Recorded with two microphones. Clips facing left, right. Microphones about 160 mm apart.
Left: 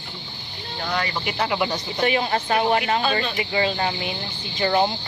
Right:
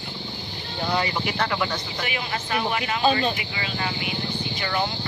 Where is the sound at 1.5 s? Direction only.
20° left (ahead or behind).